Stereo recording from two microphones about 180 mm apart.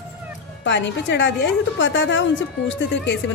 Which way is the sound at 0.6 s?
85° left.